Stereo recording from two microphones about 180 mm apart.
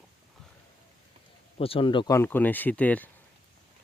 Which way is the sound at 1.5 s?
30° left (ahead or behind).